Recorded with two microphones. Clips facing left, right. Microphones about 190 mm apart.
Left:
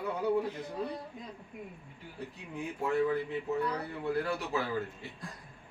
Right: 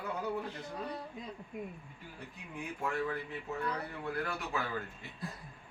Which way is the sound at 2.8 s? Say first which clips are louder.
Left 7 dB; 20° left (ahead or behind).